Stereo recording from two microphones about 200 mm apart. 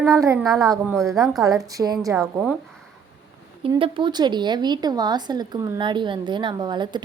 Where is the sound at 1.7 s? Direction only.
20° right (ahead or behind).